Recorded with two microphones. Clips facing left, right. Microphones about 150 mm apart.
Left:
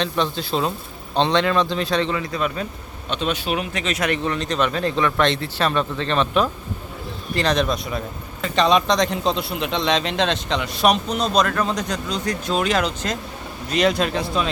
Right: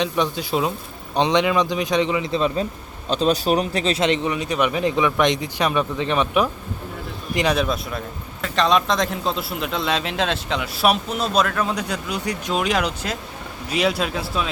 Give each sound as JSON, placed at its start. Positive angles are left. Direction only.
{"t": 0.0, "sound": "speech", "side_deg": -10}
{"t": 2.3, "sound": "a man's voice", "side_deg": -25}